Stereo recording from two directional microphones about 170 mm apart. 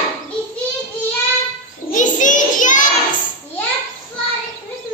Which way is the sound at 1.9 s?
50° left (ahead or behind).